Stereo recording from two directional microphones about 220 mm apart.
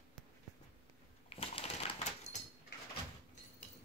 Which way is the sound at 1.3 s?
25° left (ahead or behind).